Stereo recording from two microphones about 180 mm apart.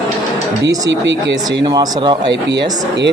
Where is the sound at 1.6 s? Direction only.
20° right (ahead or behind).